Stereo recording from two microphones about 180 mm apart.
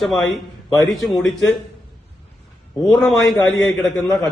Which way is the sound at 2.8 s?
Centre (ahead or behind).